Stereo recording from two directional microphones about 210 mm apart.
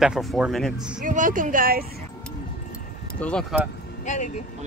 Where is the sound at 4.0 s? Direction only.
35° left (ahead or behind).